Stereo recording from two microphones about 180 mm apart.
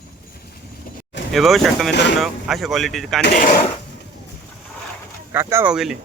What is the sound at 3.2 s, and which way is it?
Speech, 55° left (ahead or behind).